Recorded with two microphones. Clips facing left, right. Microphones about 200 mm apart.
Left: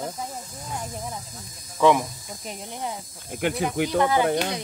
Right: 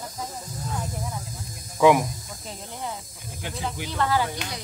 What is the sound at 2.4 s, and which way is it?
Speech, 15° left (ahead or behind).